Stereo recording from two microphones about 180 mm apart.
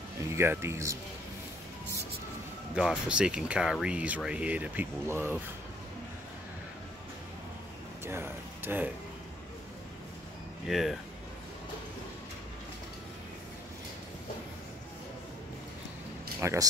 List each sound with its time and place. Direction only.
0.4 s speech: 15° right (ahead or behind)
2.7 s speech: 5° right (ahead or behind)
8.0 s speech: 15° right (ahead or behind)
10.7 s speech: centre (ahead or behind)
16.3 s speech: 15° right (ahead or behind)